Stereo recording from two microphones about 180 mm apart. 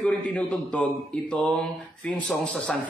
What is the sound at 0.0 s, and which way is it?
Speech, 5° left (ahead or behind).